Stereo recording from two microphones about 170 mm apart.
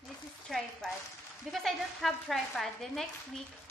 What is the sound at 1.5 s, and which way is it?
A woman's voice, centre (ahead or behind).